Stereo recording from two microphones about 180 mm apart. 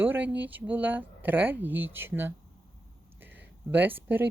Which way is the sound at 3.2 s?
10° right (ahead or behind).